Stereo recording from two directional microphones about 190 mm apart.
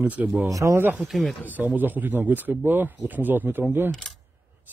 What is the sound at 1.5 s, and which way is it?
Speech, 10° right (ahead or behind).